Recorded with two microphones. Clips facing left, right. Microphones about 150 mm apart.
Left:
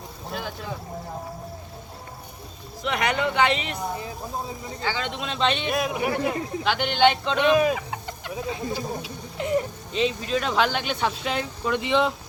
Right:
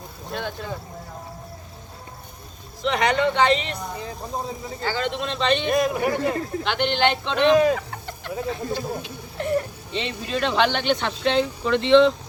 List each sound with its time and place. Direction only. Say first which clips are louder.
0.3 s speech: right 3 dB; 5° left (ahead or behind)
2.8 s speech: right 4 dB; 5° left (ahead or behind)
9.9 s speech: left 5 dB; 70° right (ahead or behind)
10.2 s speech: right 1 dB; 10° right (ahead or behind)
10.6 s speech: right 4 dB; 5° left (ahead or behind)